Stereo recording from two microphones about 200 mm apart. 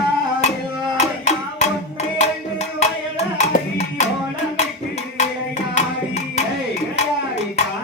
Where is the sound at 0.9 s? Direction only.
35° left (ahead or behind).